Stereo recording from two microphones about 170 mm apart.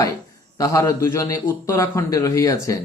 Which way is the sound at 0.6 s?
20° left (ahead or behind).